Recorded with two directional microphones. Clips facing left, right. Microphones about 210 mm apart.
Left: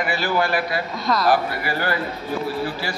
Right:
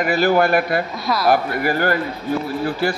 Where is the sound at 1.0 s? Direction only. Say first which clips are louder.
Even; 5° right (ahead or behind).